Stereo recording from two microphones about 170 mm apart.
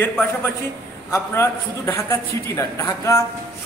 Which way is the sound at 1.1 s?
15° left (ahead or behind).